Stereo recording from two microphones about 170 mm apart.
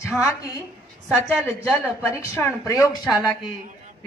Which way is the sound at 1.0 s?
5° right (ahead or behind).